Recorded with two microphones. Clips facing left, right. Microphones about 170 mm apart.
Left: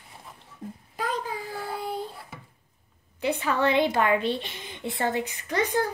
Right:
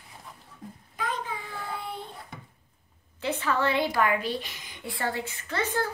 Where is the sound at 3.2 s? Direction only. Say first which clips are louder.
Left 2 dB; 15° left (ahead or behind).